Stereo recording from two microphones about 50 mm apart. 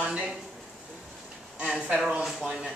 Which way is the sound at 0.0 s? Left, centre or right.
Right.